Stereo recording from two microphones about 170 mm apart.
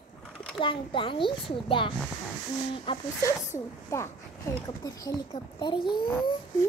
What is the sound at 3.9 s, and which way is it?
Speech, 15° left (ahead or behind).